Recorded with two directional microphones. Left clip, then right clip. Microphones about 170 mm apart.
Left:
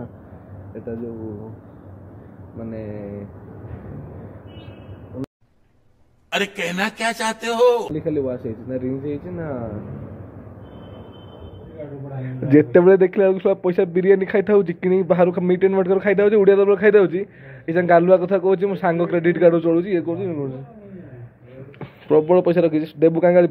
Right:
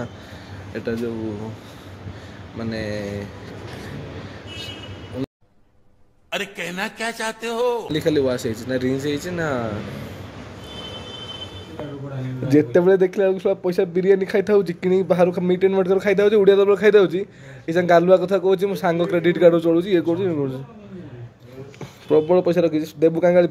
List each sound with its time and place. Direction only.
2.7 s speech: 15° right (ahead or behind)
6.3 s a man's voice: centre (ahead or behind)
7.9 s speech: 20° right (ahead or behind)
12.4 s speech: 5° right (ahead or behind); by 20.1 s 25° right (ahead or behind)
20.1 s a man's voice: 40° right (ahead or behind)
21.7 s speech: 15° right (ahead or behind)